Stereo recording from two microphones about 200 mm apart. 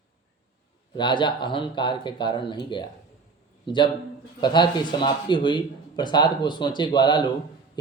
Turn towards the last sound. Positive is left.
turn(degrees=20)  # may be behind; listen again after turning